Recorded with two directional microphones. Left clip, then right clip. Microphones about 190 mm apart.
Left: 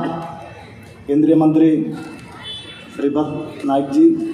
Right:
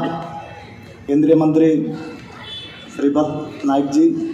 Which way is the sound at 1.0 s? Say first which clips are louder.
Even; 40° right (ahead or behind).